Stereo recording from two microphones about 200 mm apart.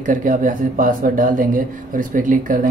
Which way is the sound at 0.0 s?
40° right (ahead or behind).